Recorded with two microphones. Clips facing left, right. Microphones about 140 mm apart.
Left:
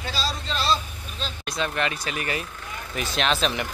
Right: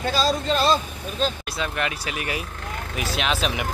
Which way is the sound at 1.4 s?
5° right (ahead or behind).